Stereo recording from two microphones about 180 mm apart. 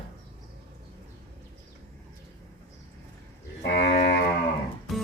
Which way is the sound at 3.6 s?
65° left (ahead or behind).